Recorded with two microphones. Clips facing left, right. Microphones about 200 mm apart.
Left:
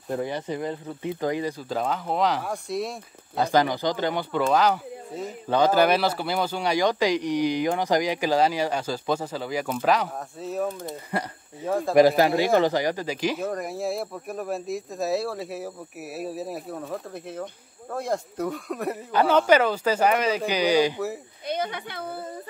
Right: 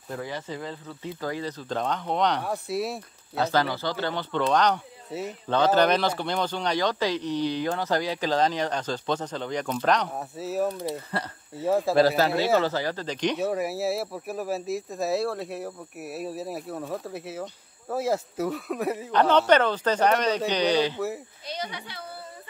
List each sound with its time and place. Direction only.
0.2 s speech: 20° left (ahead or behind); by 3.0 s 5° right (ahead or behind)
3.3 s speech: 15° left (ahead or behind); by 10.7 s 5° right (ahead or behind)
11.1 s speech: 15° left (ahead or behind)
11.6 s speech: 5° right (ahead or behind)
11.9 s speech: 15° left (ahead or behind)
13.5 s speech: 5° right (ahead or behind); by 21.0 s 10° left (ahead or behind)
21.5 s a woman's voice: 55° left (ahead or behind)